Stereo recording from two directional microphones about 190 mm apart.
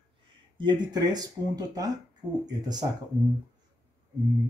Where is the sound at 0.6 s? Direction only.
20° right (ahead or behind).